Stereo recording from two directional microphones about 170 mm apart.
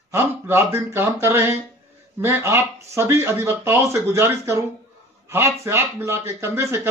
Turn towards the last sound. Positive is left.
turn(degrees=-15)  # may be behind; listen again after turning